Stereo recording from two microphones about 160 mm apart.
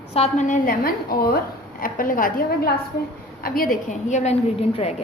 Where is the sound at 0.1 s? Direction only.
45° left (ahead or behind); by 3.7 s 65° left (ahead or behind).